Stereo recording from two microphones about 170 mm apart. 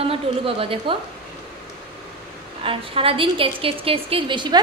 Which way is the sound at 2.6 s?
35° right (ahead or behind).